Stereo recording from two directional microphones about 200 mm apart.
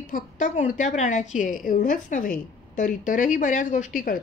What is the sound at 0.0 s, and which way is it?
A woman's voice, 40° left (ahead or behind).